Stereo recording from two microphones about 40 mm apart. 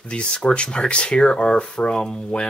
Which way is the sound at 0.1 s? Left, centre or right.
Left.